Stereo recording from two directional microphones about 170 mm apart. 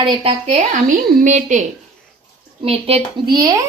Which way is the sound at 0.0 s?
30° right (ahead or behind).